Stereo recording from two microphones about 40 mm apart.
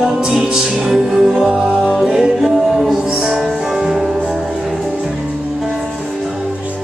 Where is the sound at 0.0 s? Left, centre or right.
Centre.